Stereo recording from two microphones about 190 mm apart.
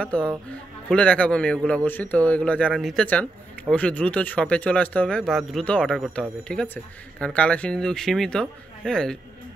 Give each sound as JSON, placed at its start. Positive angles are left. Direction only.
{"t": 0.0, "sound": "speech", "side_deg": 5}